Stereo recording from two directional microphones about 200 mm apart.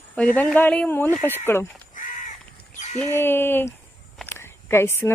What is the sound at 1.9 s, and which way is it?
Crow, 40° left (ahead or behind).